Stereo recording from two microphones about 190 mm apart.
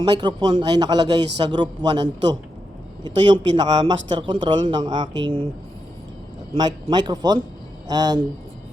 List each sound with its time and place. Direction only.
0.0 s speech: 20° right (ahead or behind)
6.5 s speech: 25° right (ahead or behind)